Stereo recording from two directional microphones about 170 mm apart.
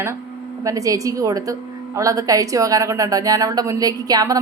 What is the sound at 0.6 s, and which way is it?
A woman's voice, 20° right (ahead or behind).